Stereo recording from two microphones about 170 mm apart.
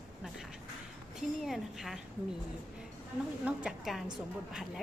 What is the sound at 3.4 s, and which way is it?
Speech, 5° right (ahead or behind).